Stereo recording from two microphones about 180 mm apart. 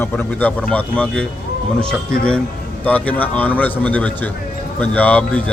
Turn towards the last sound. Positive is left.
turn(degrees=5)  # may be behind; listen again after turning